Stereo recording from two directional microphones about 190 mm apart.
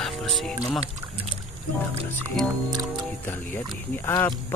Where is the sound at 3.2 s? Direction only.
10° left (ahead or behind).